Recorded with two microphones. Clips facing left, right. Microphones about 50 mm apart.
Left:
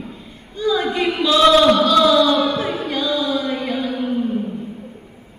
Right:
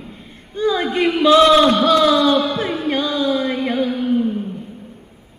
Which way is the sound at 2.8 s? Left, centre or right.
Right.